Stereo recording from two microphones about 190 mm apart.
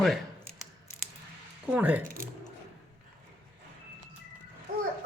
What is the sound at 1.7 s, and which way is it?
Speech, 10° right (ahead or behind).